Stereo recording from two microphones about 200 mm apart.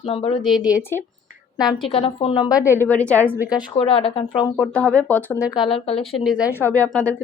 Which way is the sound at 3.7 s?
25° left (ahead or behind).